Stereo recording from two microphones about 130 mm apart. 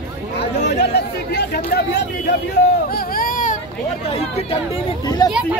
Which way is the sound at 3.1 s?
90° left.